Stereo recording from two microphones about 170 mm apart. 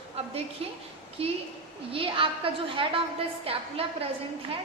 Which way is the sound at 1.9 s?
30° right (ahead or behind).